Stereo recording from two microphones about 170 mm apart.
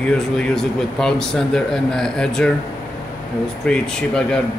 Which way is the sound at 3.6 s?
5° left (ahead or behind).